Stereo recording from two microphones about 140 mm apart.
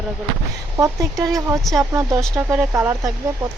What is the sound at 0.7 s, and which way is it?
Speech, 25° right (ahead or behind).